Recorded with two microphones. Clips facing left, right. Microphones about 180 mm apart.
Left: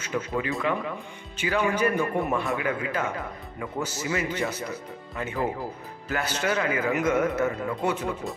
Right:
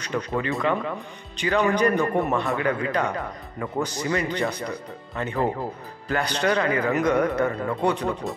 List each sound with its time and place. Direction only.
0.0 s speech: 5° left (ahead or behind)